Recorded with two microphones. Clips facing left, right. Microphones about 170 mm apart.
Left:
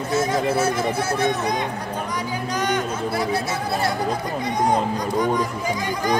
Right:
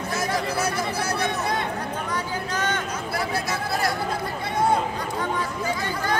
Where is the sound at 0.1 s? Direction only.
25° left (ahead or behind).